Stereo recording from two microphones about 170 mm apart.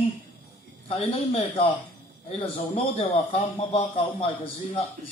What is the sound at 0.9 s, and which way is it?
A man's voice, 30° left (ahead or behind).